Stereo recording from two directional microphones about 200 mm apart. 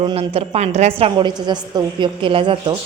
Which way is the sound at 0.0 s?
30° right (ahead or behind).